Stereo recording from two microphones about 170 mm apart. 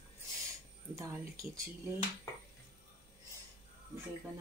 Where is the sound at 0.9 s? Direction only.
20° right (ahead or behind).